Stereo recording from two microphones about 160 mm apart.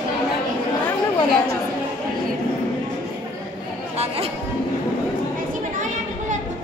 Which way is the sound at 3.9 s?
40° right (ahead or behind).